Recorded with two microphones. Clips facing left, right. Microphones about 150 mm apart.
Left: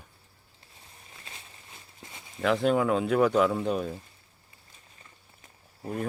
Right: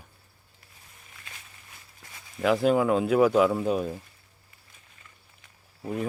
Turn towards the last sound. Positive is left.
turn(degrees=0)  # may be behind; listen again after turning